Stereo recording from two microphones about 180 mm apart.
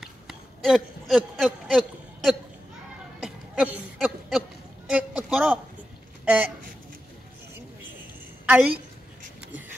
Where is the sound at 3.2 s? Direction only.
5° right (ahead or behind).